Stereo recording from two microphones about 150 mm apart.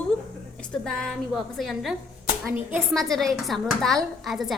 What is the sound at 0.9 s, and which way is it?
A woman's voice, 5° left (ahead or behind).